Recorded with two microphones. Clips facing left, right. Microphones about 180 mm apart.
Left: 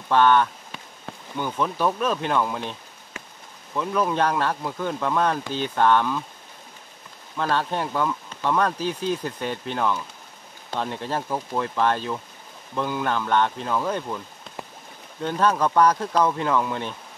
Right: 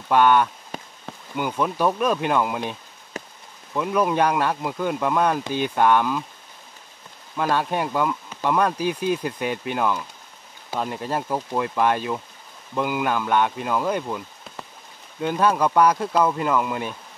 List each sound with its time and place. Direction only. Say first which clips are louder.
0.1 s speech: right 1 dB; 15° right (ahead or behind)
0.7 s insect: right 6 dB; 40° right (ahead or behind)
1.3 s speech: right 2 dB; 15° right (ahead or behind)
3.7 s speech: right 2 dB; 15° right (ahead or behind)
7.3 s speech: right 2 dB; 15° right (ahead or behind)
15.2 s speech: right 1 dB; 15° right (ahead or behind)